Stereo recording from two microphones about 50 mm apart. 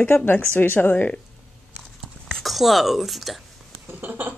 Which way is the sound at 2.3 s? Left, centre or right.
Centre.